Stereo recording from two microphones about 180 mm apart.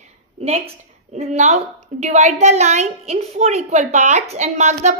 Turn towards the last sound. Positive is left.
turn(degrees=-40)  # may be behind; listen again after turning